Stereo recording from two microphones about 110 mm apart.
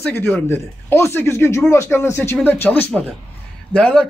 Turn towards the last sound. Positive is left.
turn(degrees=10)  # may be behind; listen again after turning